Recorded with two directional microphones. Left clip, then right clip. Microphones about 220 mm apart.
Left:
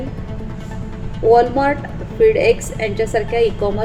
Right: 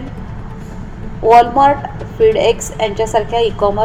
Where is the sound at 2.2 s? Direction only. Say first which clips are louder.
Right 1 dB; 20° right (ahead or behind).